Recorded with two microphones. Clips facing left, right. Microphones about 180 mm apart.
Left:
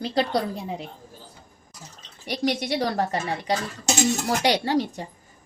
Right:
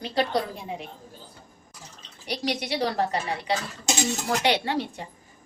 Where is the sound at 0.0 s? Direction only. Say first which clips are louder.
Left 2 dB; 35° left (ahead or behind).